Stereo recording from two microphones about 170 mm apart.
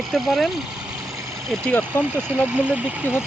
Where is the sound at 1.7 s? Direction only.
10° left (ahead or behind).